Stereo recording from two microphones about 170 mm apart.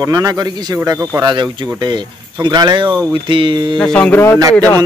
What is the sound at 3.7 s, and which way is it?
Speech, 5° left (ahead or behind).